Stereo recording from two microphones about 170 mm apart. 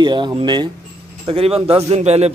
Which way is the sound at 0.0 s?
25° right (ahead or behind).